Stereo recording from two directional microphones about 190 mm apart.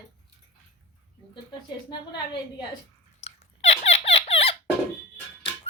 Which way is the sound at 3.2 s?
35° left (ahead or behind).